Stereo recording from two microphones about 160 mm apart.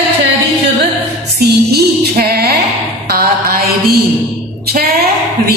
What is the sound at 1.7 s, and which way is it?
Music, 80° right.